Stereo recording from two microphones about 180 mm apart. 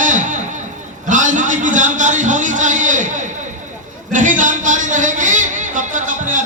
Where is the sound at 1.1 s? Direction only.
45° right (ahead or behind).